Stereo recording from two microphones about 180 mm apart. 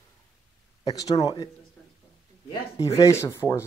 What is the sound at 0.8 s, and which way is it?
Speech, 20° left (ahead or behind).